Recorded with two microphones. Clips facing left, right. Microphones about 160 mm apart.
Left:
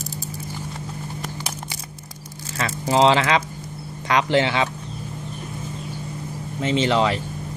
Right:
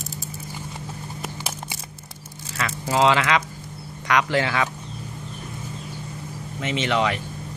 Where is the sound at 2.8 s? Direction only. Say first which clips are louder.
Left 3 dB; 25° left (ahead or behind).